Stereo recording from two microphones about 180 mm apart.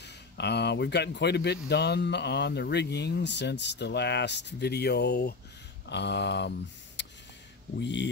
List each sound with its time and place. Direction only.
0.0 s speech: 70° left (ahead or behind)
7.0 s a sound: 80° left
7.8 s speech: 80° left